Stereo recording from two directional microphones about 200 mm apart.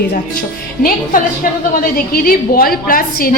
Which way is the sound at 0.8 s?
45° left (ahead or behind).